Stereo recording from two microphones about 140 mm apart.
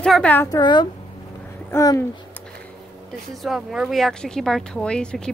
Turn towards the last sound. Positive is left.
turn(degrees=5)  # may be behind; listen again after turning